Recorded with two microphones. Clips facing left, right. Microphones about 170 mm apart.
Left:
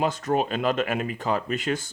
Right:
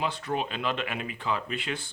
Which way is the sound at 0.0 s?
45° left (ahead or behind).